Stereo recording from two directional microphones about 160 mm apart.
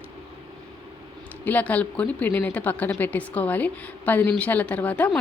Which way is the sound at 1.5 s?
10° left (ahead or behind).